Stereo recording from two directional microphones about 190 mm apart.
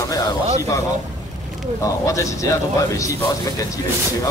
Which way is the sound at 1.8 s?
15° left (ahead or behind).